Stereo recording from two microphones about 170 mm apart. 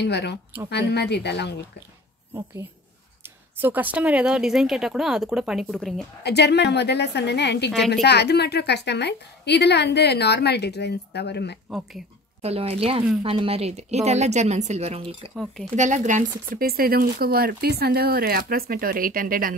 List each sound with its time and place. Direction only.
0.0 s a woman's voice: 90° left
0.7 s a woman's voice: 80° left
3.5 s a woman's voice: 10° right (ahead or behind)
6.2 s a woman's voice: 80° left
12.4 s speech: 35° right (ahead or behind)
15.7 s speech: 45° right (ahead or behind)